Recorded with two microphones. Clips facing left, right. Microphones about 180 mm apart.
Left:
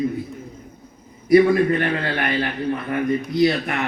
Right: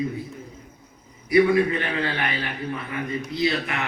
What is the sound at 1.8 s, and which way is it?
A man's voice, 50° left (ahead or behind).